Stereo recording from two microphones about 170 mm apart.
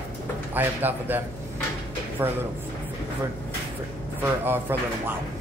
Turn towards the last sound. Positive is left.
turn(degrees=-10)  # may be behind; listen again after turning